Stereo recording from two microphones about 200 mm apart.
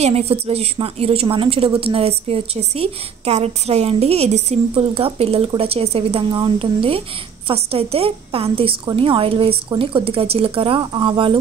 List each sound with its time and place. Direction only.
0.0 s a woman's voice: 30° right (ahead or behind)